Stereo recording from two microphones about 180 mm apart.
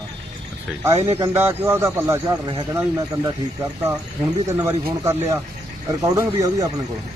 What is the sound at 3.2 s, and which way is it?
Speech, 15° right (ahead or behind).